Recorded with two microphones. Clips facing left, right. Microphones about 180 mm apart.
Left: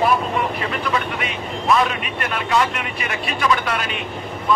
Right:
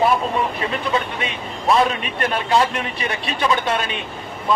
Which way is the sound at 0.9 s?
30° right (ahead or behind).